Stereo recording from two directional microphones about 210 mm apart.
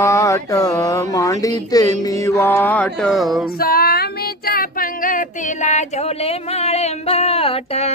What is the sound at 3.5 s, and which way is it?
Female singing, 45° left (ahead or behind).